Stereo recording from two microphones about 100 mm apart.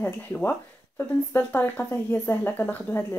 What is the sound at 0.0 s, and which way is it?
Speech, 20° left (ahead or behind).